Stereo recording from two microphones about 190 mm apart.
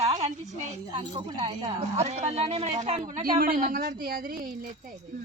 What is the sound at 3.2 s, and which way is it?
A woman's voice, 50° right (ahead or behind).